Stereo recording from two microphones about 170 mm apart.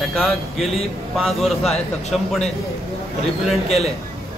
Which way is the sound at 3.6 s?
35° left (ahead or behind).